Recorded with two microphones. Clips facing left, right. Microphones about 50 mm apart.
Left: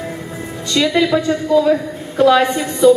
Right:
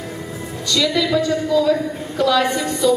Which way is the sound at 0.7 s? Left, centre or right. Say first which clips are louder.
Left 3 dB; left.